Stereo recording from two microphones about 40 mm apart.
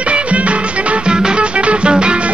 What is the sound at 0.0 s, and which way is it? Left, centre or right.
Music, right.